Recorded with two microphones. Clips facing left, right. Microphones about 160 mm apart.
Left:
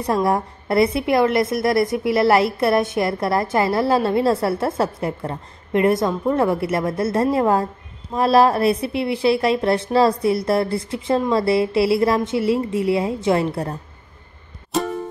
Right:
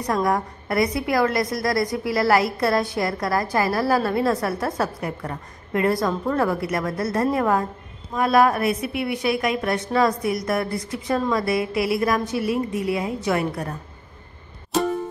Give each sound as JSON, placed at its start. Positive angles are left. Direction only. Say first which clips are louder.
{"t": 0.0, "sound": "a woman's voice", "louder": "left 3 dB", "side_deg": 25}
{"t": 14.7, "sound": "music", "louder": "right 1 dB", "side_deg": 0}